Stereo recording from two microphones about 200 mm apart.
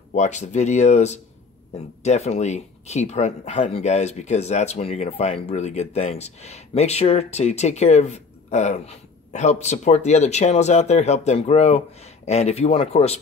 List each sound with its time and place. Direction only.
0.1 s speech: 35° left (ahead or behind)